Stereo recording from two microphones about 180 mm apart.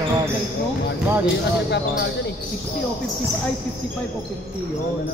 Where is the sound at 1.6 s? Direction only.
70° left (ahead or behind).